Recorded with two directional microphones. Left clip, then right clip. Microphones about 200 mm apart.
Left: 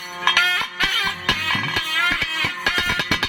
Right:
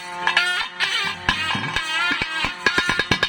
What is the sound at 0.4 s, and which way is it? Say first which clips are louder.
Music: left 2 dB; 55° right (ahead or behind).